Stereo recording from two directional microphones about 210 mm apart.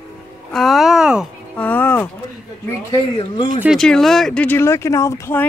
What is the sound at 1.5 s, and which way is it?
Speech, 10° left (ahead or behind).